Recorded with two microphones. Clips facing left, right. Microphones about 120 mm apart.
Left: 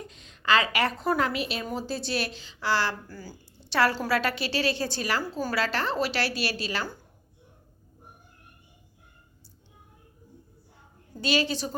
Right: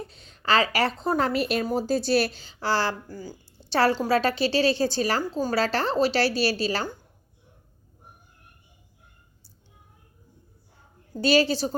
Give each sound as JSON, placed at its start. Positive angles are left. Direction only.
{"t": 0.0, "sound": "speech", "side_deg": -35}
{"t": 3.1, "sound": "speech", "side_deg": -20}
{"t": 3.7, "sound": "a woman's voice", "side_deg": -30}
{"t": 11.1, "sound": "speech", "side_deg": -35}